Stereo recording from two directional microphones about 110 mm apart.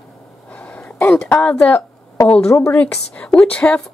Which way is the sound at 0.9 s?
20° left (ahead or behind).